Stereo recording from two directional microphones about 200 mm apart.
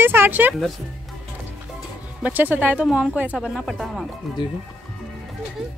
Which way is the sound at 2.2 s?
10° right (ahead or behind).